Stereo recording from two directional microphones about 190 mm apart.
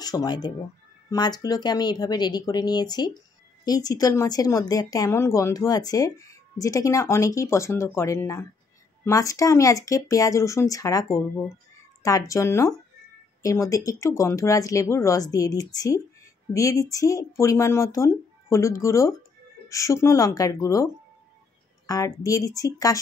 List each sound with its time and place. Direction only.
0.0 s a woman's voice: 20° left (ahead or behind)